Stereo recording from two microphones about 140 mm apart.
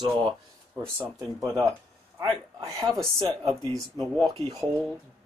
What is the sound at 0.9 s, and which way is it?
Speech, 20° right (ahead or behind).